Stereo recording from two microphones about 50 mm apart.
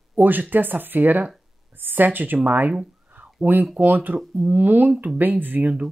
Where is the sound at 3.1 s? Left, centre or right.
Right.